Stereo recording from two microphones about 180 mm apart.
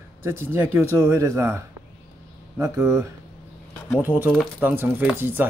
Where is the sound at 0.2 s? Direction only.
15° right (ahead or behind).